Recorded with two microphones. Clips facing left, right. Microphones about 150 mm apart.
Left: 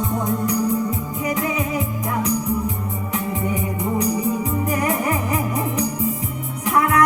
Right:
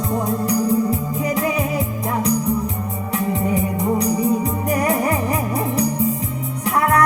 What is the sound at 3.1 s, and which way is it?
Music, 35° right (ahead or behind).